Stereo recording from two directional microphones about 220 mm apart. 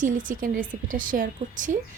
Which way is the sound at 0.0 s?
35° right (ahead or behind).